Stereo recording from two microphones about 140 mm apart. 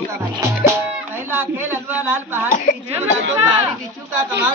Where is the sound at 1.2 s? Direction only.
15° right (ahead or behind).